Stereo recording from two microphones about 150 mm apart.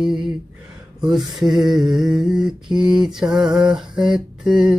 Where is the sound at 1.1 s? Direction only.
Centre (ahead or behind).